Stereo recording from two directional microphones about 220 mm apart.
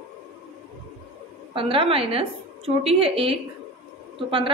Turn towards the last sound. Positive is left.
turn(degrees=-25)  # may be behind; listen again after turning